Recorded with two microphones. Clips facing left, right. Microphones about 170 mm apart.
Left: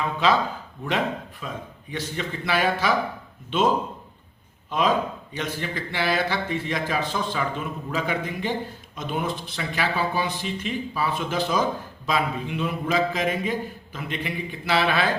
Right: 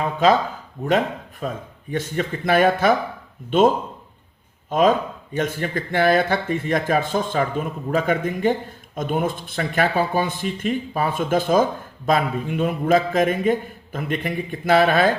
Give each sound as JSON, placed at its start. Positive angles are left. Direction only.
{"t": 0.0, "sound": "speech", "side_deg": -45}
{"t": 4.7, "sound": "speech", "side_deg": -50}